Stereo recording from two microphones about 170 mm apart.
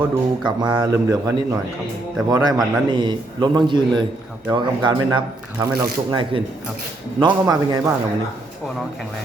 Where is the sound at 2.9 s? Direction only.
25° right (ahead or behind).